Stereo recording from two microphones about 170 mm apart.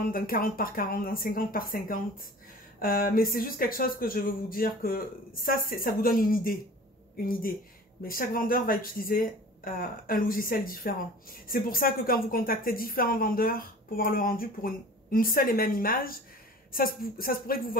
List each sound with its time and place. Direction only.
0.0 s a woman's voice: 60° left (ahead or behind)
8.0 s a woman's voice: 60° left (ahead or behind)